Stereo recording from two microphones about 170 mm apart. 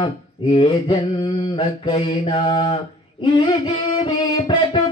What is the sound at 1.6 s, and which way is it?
Mantra, 35° left (ahead or behind).